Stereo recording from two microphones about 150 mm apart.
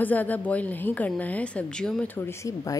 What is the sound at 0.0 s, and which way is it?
Speech, 10° left (ahead or behind).